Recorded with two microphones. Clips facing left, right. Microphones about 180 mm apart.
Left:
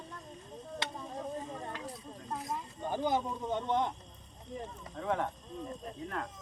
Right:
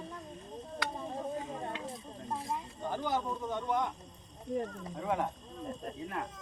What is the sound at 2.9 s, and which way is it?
Speech, 15° left (ahead or behind).